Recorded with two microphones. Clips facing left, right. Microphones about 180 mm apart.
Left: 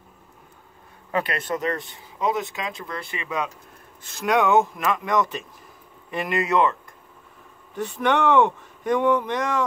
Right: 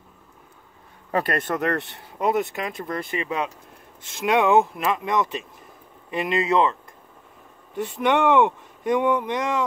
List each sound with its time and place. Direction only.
1.1 s speech: 45° right (ahead or behind); by 9.7 s 20° right (ahead or behind)